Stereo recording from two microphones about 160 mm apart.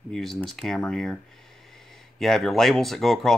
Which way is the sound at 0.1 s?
Centre (ahead or behind).